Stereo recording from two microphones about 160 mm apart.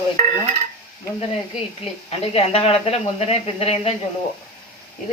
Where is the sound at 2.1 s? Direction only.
35° left (ahead or behind).